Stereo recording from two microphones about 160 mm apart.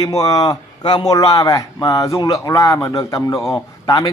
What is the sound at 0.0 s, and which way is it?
Speech, 20° left (ahead or behind).